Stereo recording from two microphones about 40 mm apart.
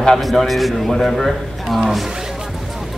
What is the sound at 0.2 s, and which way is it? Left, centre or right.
A man's voice, centre.